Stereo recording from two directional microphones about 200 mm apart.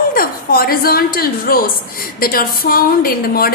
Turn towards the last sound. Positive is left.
turn(degrees=50)  # may be behind; listen again after turning